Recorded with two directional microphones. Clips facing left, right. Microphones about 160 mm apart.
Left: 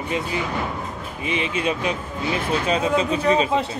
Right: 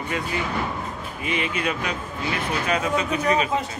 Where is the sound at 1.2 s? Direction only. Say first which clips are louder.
Left 2 dB; 25° left (ahead or behind).